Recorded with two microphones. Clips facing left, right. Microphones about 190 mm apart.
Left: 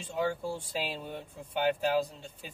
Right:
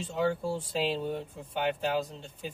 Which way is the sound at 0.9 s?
30° right (ahead or behind).